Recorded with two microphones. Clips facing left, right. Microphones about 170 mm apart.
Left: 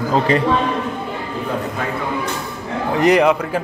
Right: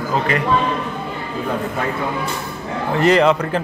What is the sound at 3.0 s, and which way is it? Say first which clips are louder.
Speech: even; 15° left (ahead or behind).